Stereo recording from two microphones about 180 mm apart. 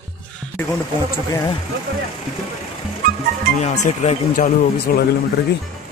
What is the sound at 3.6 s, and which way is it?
Speech, 40° left (ahead or behind).